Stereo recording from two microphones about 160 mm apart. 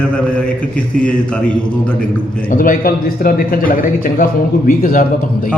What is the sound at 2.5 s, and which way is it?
A man's voice, 55° left (ahead or behind).